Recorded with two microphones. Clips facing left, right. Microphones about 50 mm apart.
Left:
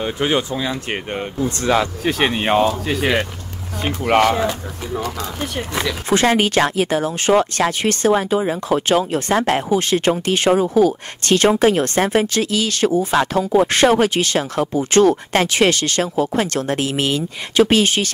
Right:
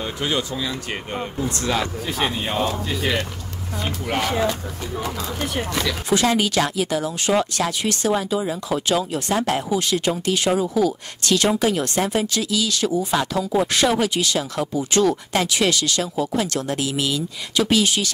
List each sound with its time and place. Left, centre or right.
0.0 s speech: left
2.0 s speech: left
4.0 s speech: left
4.4 s speech: centre
5.0 s speech: centre
6.0 s speech: left